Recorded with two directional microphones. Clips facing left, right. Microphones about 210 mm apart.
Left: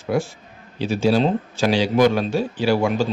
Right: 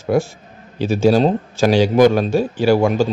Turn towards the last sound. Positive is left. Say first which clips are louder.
# right 5 dB
turn(degrees=-45)  # may be behind; listen again after turning